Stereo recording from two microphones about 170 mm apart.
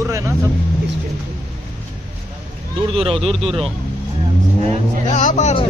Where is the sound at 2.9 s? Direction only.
35° right (ahead or behind).